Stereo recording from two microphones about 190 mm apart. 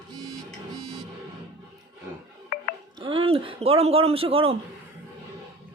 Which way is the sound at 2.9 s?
30° right (ahead or behind).